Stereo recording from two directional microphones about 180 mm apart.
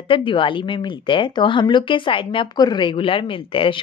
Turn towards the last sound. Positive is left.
turn(degrees=30)  # may be behind; listen again after turning